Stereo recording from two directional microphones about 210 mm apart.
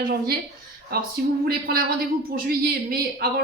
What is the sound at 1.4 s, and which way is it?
A man's voice, 45° right (ahead or behind).